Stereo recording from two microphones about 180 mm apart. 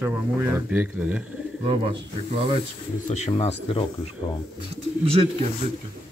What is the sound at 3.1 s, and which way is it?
Speech, 35° left (ahead or behind).